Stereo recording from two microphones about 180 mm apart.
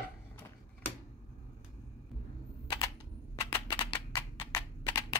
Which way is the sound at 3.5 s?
25° left (ahead or behind).